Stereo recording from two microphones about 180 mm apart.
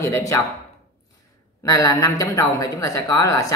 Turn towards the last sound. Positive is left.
turn(degrees=20)  # may be behind; listen again after turning